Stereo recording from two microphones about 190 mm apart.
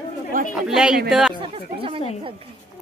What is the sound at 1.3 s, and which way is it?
Speech, 30° right (ahead or behind).